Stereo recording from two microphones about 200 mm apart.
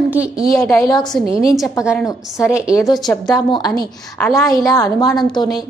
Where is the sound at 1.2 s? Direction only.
30° right (ahead or behind).